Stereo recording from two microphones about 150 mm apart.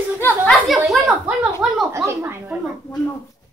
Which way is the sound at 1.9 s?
20° right (ahead or behind).